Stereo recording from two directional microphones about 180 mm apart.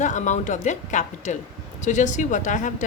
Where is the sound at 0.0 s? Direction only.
40° left (ahead or behind).